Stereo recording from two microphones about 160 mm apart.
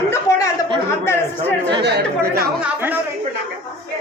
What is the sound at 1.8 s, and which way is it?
Speech, 90° right.